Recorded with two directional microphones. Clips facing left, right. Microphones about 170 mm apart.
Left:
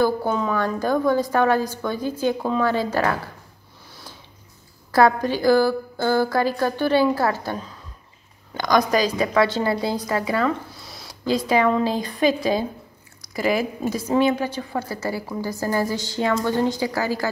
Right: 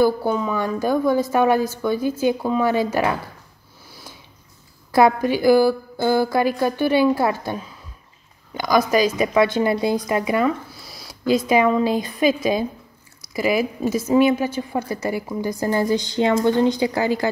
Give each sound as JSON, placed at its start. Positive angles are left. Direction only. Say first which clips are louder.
{"t": 0.0, "sound": "a woman's voice", "louder": "right 2 dB", "side_deg": -10}
{"t": 4.9, "sound": "a woman's voice", "louder": "right 2 dB", "side_deg": -10}